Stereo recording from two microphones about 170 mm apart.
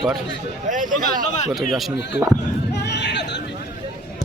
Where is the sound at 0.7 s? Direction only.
50° right (ahead or behind).